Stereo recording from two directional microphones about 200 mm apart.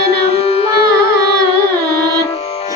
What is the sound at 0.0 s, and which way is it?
Music, 30° left (ahead or behind).